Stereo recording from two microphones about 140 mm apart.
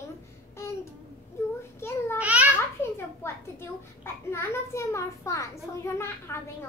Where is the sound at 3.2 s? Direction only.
20° left (ahead or behind).